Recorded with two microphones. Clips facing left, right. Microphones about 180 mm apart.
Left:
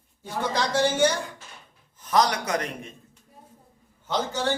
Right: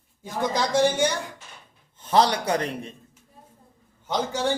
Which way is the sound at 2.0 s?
30° right (ahead or behind).